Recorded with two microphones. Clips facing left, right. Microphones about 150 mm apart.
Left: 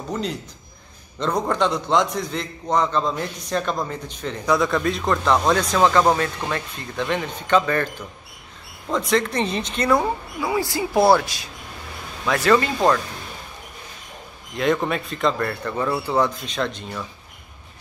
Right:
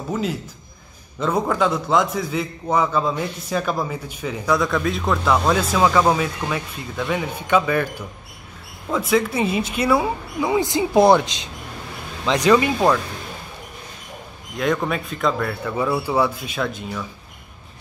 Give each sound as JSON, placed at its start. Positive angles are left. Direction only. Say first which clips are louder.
{"t": 0.1, "sound": "a man's voice", "louder": "right 3 dB", "side_deg": -5}
{"t": 8.9, "sound": "speech", "louder": "right 1 dB", "side_deg": -5}
{"t": 10.4, "sound": "speech", "louder": "right 4 dB", "side_deg": -20}
{"t": 14.6, "sound": "a man's voice", "louder": "left 1 dB", "side_deg": 0}